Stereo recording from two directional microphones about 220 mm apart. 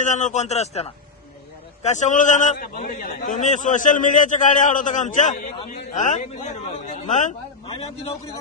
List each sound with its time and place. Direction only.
0.0 s a man's voice: 35° left (ahead or behind)